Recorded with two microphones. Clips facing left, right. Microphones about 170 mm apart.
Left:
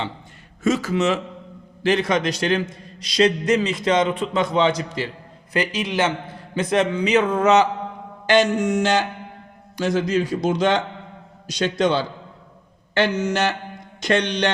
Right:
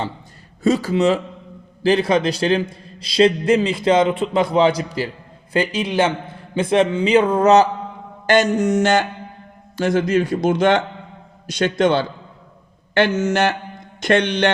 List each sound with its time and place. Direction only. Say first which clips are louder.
0.6 s a man's voice: right 3 dB; 30° right (ahead or behind)
8.3 s music: right 2 dB; 45° right (ahead or behind)
9.8 s a man's voice: right 3 dB; 55° right (ahead or behind)
12.9 s music: right 3 dB; 50° right (ahead or behind)
14.0 s a man's voice: right 4 dB; 55° right (ahead or behind)